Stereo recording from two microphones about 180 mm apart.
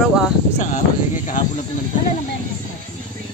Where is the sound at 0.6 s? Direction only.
40° left (ahead or behind).